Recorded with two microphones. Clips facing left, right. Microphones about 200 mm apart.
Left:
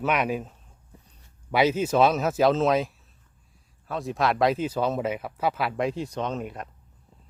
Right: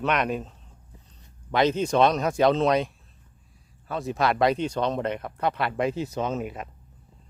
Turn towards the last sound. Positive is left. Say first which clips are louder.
# right 2 dB
turn(degrees=-5)  # may be behind; listen again after turning